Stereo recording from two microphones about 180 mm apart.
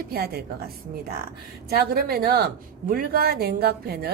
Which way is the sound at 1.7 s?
60° right (ahead or behind).